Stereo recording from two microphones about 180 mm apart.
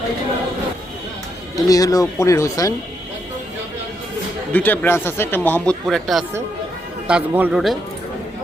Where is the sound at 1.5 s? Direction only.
20° left (ahead or behind).